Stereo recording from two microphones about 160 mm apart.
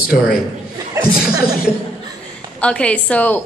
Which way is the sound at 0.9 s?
25° right (ahead or behind).